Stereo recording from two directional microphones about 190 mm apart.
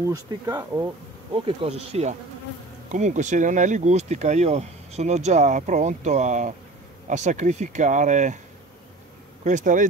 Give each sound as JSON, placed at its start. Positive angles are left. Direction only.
{"t": 0.1, "sound": "speech", "side_deg": -20}
{"t": 9.4, "sound": "speech", "side_deg": -40}